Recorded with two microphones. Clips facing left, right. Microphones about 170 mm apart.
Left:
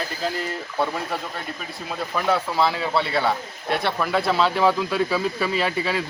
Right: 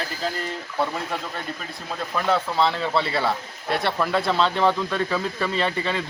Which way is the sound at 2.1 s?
5° left (ahead or behind).